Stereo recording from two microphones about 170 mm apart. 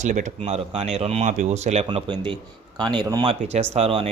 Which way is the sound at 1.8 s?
30° right (ahead or behind).